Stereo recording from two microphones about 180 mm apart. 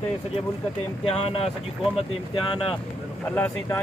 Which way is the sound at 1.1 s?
35° left (ahead or behind).